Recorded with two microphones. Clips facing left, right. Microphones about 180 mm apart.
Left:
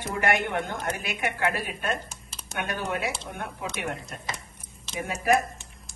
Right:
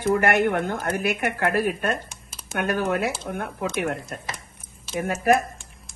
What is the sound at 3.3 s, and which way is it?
Speech, 55° right (ahead or behind).